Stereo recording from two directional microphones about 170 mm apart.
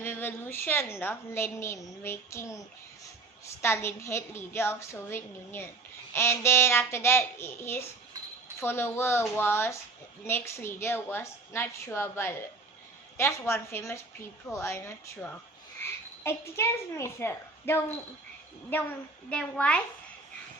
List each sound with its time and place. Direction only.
0.0 s a woman's voice: 10° left (ahead or behind)